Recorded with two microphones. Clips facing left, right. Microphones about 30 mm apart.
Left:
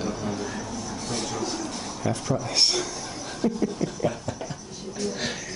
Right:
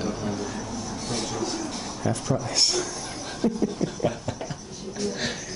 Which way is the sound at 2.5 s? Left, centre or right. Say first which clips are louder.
Left 2 dB; centre.